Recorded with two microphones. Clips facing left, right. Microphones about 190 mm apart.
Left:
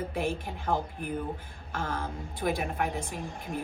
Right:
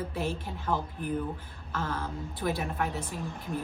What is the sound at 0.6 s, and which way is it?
A woman's voice, 50° left (ahead or behind).